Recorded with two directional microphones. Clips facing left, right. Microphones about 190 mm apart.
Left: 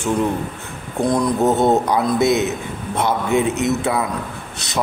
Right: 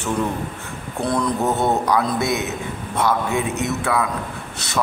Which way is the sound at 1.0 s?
15° left (ahead or behind).